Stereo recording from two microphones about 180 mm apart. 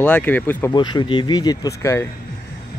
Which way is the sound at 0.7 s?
25° left (ahead or behind).